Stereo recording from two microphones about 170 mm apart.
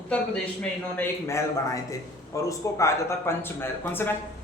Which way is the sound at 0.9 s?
15° left (ahead or behind).